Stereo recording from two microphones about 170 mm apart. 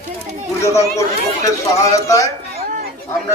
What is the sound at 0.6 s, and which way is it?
Speech, 20° left (ahead or behind).